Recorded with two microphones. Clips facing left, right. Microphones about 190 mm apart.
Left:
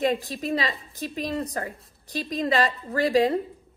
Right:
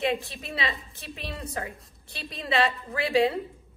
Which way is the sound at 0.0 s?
40° left (ahead or behind).